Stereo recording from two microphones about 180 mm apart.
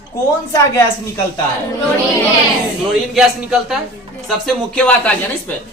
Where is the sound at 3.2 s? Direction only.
5° right (ahead or behind).